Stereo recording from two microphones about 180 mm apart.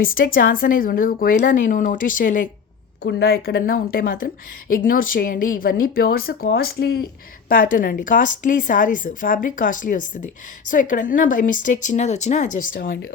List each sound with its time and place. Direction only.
0.0 s speech: 55° left (ahead or behind)
3.0 s speech: 70° left (ahead or behind)
7.4 s speech: 50° left (ahead or behind)